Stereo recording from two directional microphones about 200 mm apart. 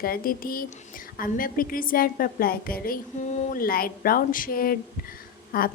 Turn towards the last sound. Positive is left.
turn(degrees=45)  # may be behind; listen again after turning